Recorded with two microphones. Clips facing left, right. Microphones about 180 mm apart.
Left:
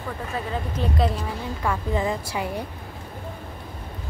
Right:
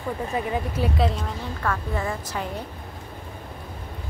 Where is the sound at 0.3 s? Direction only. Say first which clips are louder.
Right 1 dB; 15° right (ahead or behind).